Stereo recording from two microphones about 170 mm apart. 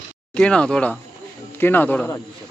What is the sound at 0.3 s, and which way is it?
Speech, 5° left (ahead or behind).